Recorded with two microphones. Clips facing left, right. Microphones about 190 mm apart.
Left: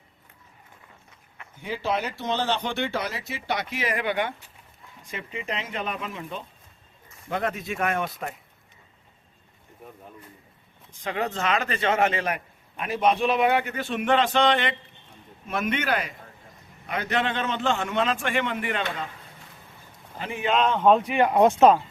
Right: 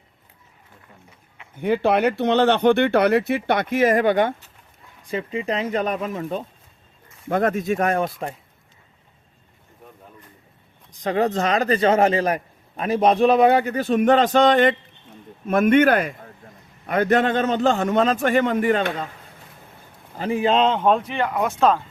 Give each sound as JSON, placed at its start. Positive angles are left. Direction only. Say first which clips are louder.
{"t": 1.5, "sound": "speech", "louder": "right 9 dB", "side_deg": -60}
{"t": 5.0, "sound": "a man's voice", "louder": "right 9 dB", "side_deg": -35}
{"t": 10.9, "sound": "a man's voice", "louder": "right 8 dB", "side_deg": -40}
{"t": 20.1, "sound": "a man's voice", "louder": "right 6 dB", "side_deg": -35}
{"t": 20.9, "sound": "speech", "louder": "left 1 dB", "side_deg": 10}
{"t": 21.2, "sound": "speech", "louder": "left 7 dB", "side_deg": 30}